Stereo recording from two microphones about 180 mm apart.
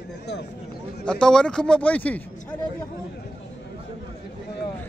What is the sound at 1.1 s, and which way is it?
Speech, 5° left (ahead or behind).